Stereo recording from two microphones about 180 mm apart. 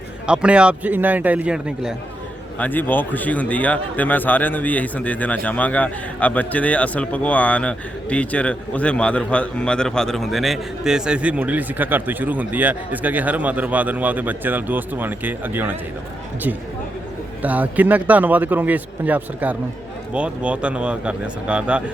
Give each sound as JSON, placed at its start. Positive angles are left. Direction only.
{"t": 0.3, "sound": "speech", "side_deg": -5}
{"t": 2.6, "sound": "a man's voice", "side_deg": 10}
{"t": 17.4, "sound": "speech", "side_deg": -10}